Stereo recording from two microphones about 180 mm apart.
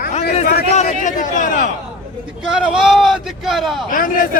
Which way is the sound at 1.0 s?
45° left (ahead or behind).